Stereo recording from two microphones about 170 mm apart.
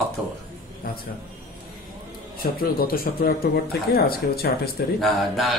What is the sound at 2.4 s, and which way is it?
Speech, 60° left (ahead or behind).